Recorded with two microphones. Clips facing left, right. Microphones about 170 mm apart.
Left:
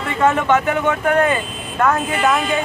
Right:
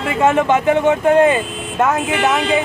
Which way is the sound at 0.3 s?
25° right (ahead or behind).